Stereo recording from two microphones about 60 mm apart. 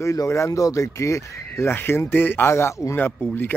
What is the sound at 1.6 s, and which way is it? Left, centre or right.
Speech, left.